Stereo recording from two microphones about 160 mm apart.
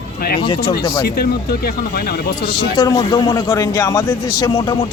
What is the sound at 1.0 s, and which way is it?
Speech, 75° left (ahead or behind).